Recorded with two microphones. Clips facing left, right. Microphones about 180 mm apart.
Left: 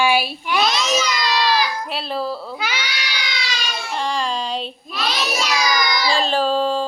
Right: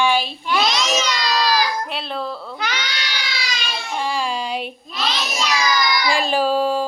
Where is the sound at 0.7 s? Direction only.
20° right (ahead or behind).